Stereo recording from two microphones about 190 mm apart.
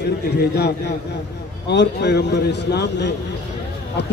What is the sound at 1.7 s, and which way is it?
A man's voice, 65° left (ahead or behind).